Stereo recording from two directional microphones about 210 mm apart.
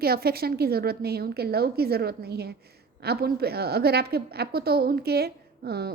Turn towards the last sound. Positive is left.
turn(degrees=-50)  # may be behind; listen again after turning